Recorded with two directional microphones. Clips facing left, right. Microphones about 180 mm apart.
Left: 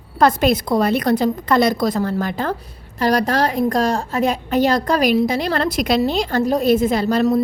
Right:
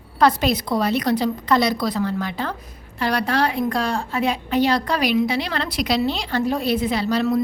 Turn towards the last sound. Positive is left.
turn(degrees=40)  # may be behind; listen again after turning